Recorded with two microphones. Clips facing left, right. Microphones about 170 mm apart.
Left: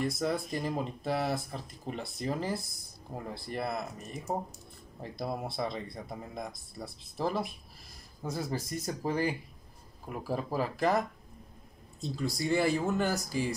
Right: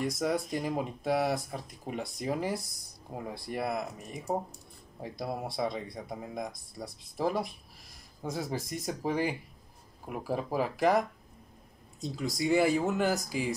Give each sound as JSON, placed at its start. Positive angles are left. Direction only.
{"t": 0.0, "sound": "speech", "side_deg": -15}
{"t": 8.2, "sound": "speech", "side_deg": 0}